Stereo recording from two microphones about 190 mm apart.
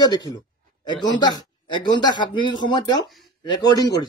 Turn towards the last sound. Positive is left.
turn(degrees=20)  # may be behind; listen again after turning